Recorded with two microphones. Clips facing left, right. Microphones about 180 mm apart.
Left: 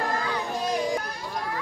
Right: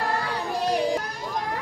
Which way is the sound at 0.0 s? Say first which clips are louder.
Right 1 dB; 35° right (ahead or behind).